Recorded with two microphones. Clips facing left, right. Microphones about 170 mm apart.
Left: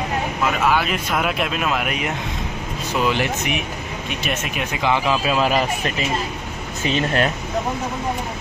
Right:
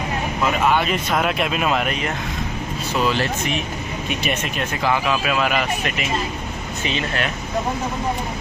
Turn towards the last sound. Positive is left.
turn(degrees=40)  # may be behind; listen again after turning